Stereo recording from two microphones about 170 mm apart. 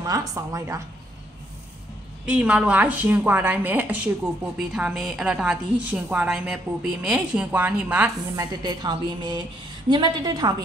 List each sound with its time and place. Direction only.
0.0 s a woman's voice: 20° right (ahead or behind)
2.2 s a woman's voice: 5° right (ahead or behind)
8.4 s a woman's voice: 25° right (ahead or behind)